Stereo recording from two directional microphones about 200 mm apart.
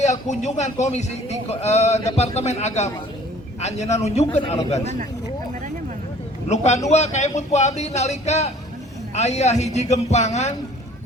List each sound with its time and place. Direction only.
0.0 s a man's voice: 35° left (ahead or behind)
6.5 s speech: 35° left (ahead or behind)